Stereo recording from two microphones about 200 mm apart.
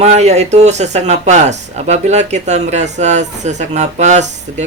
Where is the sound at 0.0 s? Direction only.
35° right (ahead or behind).